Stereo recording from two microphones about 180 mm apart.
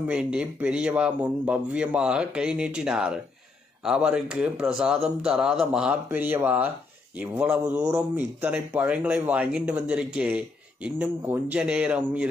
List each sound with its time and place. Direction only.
0.0 s a man's voice: 5° right (ahead or behind)